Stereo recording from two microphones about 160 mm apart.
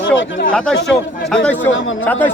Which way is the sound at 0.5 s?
5° left (ahead or behind).